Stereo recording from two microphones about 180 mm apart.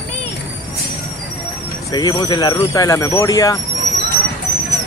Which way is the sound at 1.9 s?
20° left (ahead or behind).